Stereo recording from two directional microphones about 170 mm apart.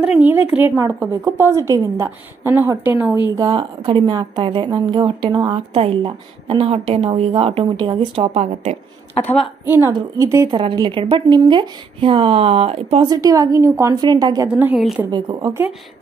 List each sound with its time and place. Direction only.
0.0 s a woman's voice: 10° right (ahead or behind)
3.3 s speech: 25° right (ahead or behind)
9.7 s a woman's voice: 10° right (ahead or behind); by 13.1 s 35° right (ahead or behind)
13.1 s speech: 20° right (ahead or behind)
14.5 s a woman's voice: 10° right (ahead or behind)
15.0 s speech: 25° right (ahead or behind)